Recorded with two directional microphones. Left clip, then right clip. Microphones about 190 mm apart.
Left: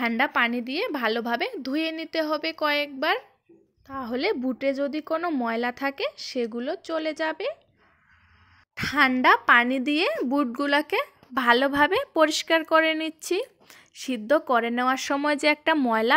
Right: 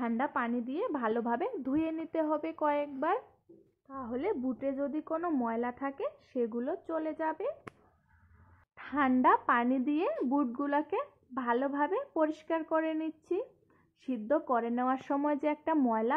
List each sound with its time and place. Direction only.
0.0 s a woman's voice: 35° left (ahead or behind)
3.9 s speech: 45° left (ahead or behind)
8.7 s speech: 30° left (ahead or behind)